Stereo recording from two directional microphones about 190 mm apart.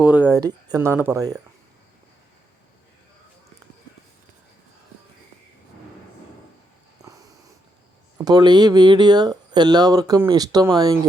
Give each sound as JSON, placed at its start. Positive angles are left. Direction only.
{"t": 0.0, "sound": "speech", "side_deg": -10}
{"t": 8.2, "sound": "speech", "side_deg": -20}